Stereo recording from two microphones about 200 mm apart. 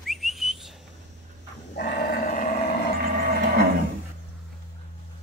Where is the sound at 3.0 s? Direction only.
55° right (ahead or behind).